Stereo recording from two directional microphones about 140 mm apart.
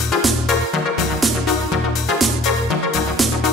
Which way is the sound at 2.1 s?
Centre (ahead or behind).